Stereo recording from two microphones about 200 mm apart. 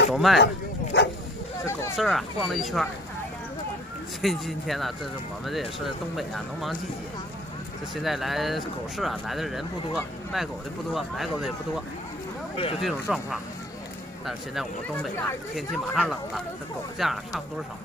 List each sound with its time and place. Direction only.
0.1 s speech: centre (ahead or behind)
0.9 s dog: 55° left (ahead or behind)
2.0 s speech: centre (ahead or behind)
4.2 s speech: centre (ahead or behind)
7.9 s speech: centre (ahead or behind)
12.5 s speech: 30° left (ahead or behind)
12.8 s speech: centre (ahead or behind)